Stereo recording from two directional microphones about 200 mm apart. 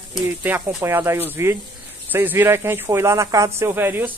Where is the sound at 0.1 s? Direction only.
10° right (ahead or behind).